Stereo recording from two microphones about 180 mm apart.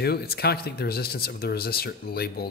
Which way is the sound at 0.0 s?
60° left (ahead or behind).